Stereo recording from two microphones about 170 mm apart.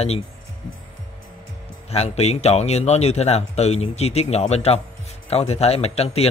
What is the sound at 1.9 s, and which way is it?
Speech, 40° left (ahead or behind).